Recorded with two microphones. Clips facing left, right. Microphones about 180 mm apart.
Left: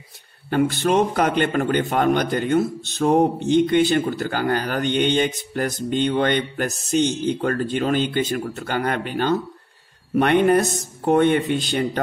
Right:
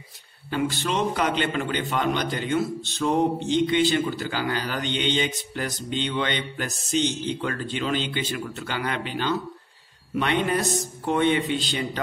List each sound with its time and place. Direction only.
0.5 s a man's voice: 55° left (ahead or behind)